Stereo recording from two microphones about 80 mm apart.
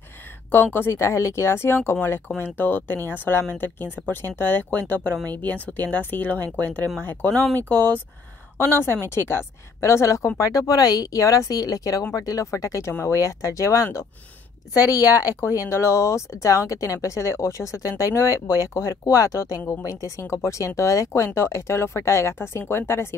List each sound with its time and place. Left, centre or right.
0.5 s speech: left
9.1 s speech: left
14.9 s a woman's voice: right
15.7 s speech: left
18.0 s a woman's voice: right
18.7 s speech: left